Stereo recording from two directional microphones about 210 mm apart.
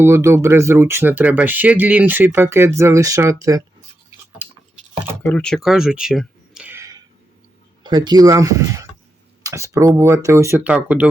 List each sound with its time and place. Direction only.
0.0 s speech: 10° right (ahead or behind)
4.4 s a sound: 10° right (ahead or behind)
5.2 s speech: 5° left (ahead or behind); by 6.9 s 10° right (ahead or behind)
7.9 s speech: 20° right (ahead or behind)